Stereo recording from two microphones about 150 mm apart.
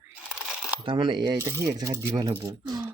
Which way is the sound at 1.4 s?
20° right (ahead or behind).